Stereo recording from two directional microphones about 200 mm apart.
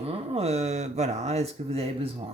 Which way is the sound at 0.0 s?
30° right (ahead or behind).